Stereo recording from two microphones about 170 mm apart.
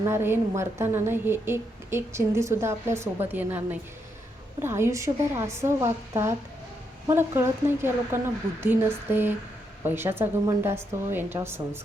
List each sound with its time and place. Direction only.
0.0 s a woman's voice: 15° right (ahead or behind)